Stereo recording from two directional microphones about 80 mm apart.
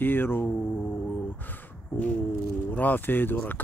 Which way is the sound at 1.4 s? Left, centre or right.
Left.